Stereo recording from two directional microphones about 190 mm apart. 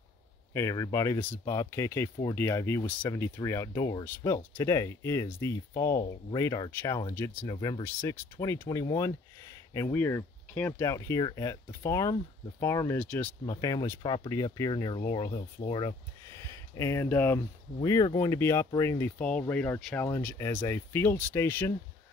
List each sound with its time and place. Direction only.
0.5 s speech: 15° left (ahead or behind)